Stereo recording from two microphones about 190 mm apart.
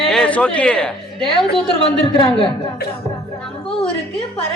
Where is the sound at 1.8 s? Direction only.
30° left (ahead or behind).